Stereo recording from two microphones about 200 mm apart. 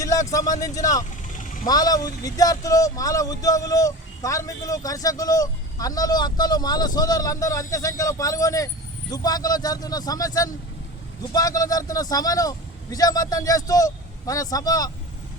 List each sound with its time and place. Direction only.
0.0 s speech: 15° left (ahead or behind)